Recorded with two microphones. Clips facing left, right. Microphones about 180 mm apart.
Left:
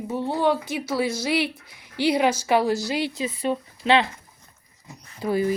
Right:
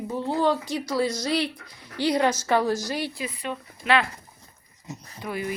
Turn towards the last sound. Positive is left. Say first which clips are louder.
# left 8 dB
turn(degrees=30)  # may be behind; listen again after turning